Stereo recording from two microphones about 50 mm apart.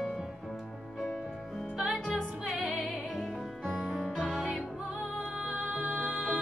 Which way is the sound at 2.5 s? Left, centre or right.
Right.